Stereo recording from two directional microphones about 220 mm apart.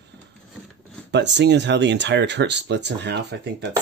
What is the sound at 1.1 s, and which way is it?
Speech, 50° right (ahead or behind).